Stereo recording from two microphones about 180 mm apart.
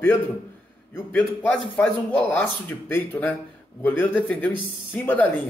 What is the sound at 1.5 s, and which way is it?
A man's voice, 10° left (ahead or behind).